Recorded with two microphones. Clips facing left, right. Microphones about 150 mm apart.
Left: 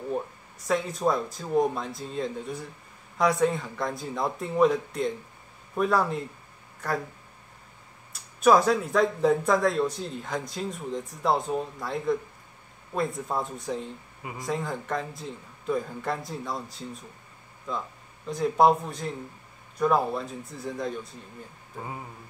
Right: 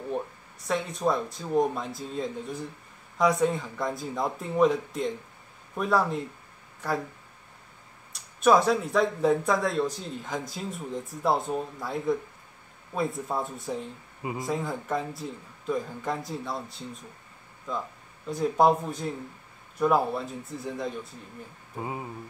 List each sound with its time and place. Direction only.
0.7 s speech: centre (ahead or behind)
8.1 s speech: centre (ahead or behind)
18.2 s speech: 5° right (ahead or behind)
21.7 s speech: 15° right (ahead or behind)